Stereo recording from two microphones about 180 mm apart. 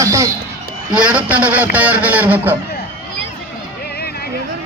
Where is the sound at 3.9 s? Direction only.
60° left (ahead or behind).